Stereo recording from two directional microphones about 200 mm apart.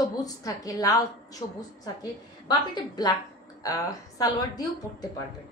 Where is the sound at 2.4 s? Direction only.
20° left (ahead or behind).